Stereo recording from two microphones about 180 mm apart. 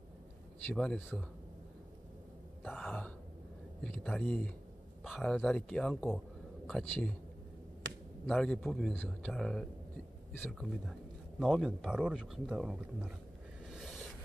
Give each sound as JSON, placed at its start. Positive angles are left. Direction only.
{"t": 0.7, "sound": "speech", "side_deg": 5}
{"t": 2.6, "sound": "gasp", "side_deg": 5}
{"t": 3.8, "sound": "speech", "side_deg": 5}
{"t": 7.8, "sound": "a sound", "side_deg": -90}
{"t": 8.3, "sound": "speech", "side_deg": 0}
{"t": 13.7, "sound": "a sound", "side_deg": 0}